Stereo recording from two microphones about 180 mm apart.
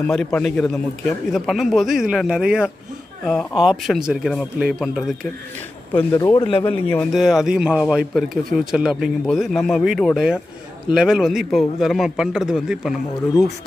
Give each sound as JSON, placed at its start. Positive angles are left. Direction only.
{"t": 0.0, "sound": "a man's voice", "side_deg": 5}
{"t": 5.9, "sound": "speech", "side_deg": 15}
{"t": 6.9, "sound": "a man's voice", "side_deg": 0}